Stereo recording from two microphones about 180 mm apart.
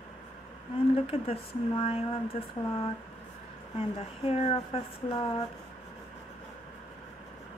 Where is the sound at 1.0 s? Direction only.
35° left (ahead or behind).